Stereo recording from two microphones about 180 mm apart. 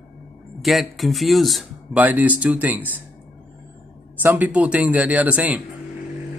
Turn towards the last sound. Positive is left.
turn(degrees=-10)  # may be behind; listen again after turning